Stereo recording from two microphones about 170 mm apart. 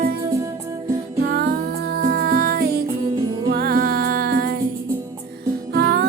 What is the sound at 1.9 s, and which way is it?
Music, 70° right (ahead or behind).